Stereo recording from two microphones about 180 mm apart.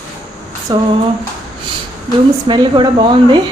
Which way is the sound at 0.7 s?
25° right (ahead or behind).